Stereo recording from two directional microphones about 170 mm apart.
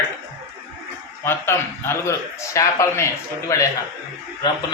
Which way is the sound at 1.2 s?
15° left (ahead or behind).